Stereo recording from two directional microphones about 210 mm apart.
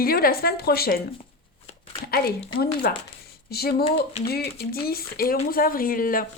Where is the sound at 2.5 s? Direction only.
45° left (ahead or behind).